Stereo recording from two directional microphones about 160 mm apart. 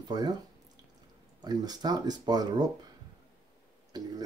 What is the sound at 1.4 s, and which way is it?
Speech, 25° right (ahead or behind).